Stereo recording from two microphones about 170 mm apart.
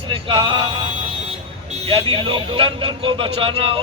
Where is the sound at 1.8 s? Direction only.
35° right (ahead or behind).